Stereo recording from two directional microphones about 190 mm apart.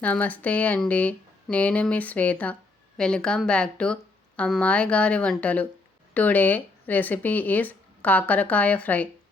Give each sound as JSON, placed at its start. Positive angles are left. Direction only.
{"t": 0.0, "sound": "speech", "side_deg": 10}